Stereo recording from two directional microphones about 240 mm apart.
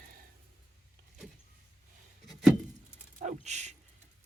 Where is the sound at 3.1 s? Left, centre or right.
Right.